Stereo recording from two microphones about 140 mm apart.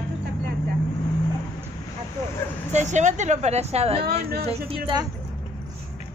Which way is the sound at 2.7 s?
55° right (ahead or behind).